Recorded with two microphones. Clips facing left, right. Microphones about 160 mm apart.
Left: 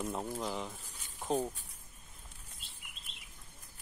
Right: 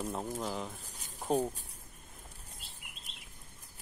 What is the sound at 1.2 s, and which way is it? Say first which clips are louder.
Speech: right 2 dB; 10° right (ahead or behind).